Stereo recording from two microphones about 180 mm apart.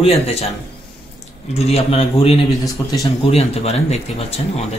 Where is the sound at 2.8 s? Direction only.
20° left (ahead or behind).